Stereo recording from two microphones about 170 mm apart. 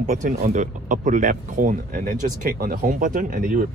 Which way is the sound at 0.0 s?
45° right (ahead or behind).